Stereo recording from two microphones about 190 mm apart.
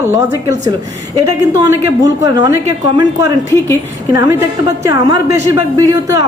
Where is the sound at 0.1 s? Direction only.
15° right (ahead or behind).